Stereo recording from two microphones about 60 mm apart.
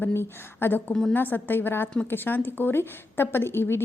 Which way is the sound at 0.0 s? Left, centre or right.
Left.